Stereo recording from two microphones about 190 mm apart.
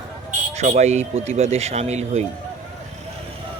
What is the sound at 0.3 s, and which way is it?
Speech, 40° right (ahead or behind).